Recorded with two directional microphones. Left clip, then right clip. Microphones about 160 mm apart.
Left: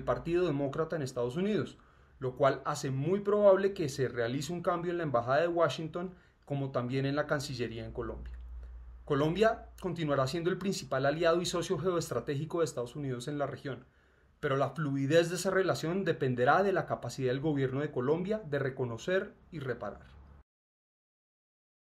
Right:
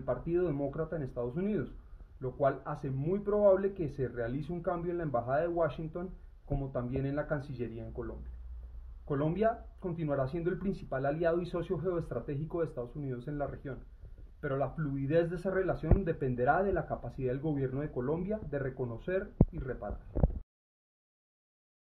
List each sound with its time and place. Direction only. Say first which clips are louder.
0.0 s speech: left 2 dB; 15° left (ahead or behind)
9.1 s speech: left 3 dB; 15° left (ahead or behind)